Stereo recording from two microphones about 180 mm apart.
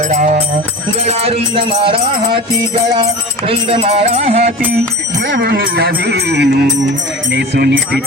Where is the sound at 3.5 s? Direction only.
30° right (ahead or behind).